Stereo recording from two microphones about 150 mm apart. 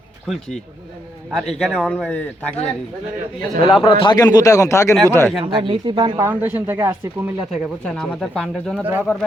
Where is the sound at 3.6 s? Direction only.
35° left (ahead or behind); by 5.3 s 15° left (ahead or behind).